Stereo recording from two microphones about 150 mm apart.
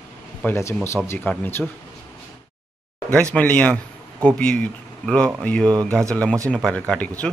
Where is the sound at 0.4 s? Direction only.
10° left (ahead or behind).